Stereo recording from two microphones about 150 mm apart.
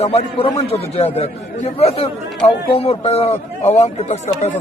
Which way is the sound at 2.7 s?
45° left (ahead or behind).